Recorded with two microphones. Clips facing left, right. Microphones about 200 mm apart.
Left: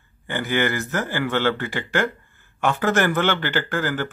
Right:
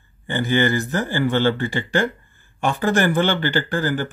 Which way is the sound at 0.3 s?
20° right (ahead or behind).